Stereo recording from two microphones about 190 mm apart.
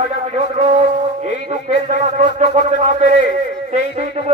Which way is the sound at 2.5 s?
40° right (ahead or behind).